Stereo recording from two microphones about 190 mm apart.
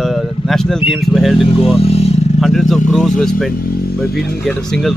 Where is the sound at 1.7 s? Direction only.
35° left (ahead or behind).